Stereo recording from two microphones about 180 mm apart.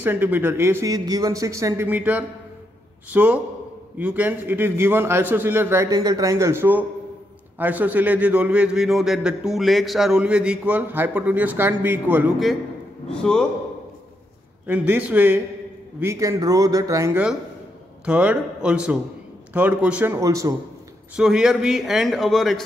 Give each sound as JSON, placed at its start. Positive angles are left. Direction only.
{"t": 0.0, "sound": "a man's voice", "side_deg": -10}
{"t": 14.7, "sound": "a man's voice", "side_deg": -5}
{"t": 18.0, "sound": "a man's voice", "side_deg": -5}
{"t": 21.2, "sound": "a man's voice", "side_deg": -5}